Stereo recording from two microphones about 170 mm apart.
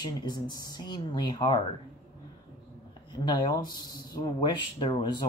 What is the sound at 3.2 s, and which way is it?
Speech, 25° left (ahead or behind).